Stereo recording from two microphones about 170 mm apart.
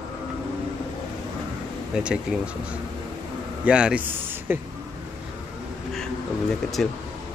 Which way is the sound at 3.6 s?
5° right (ahead or behind).